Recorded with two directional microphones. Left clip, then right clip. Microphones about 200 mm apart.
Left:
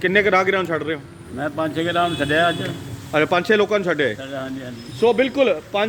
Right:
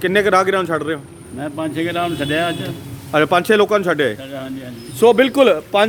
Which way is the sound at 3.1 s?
20° right (ahead or behind).